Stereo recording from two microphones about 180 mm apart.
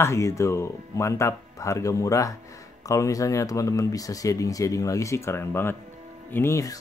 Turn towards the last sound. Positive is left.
turn(degrees=15)  # may be behind; listen again after turning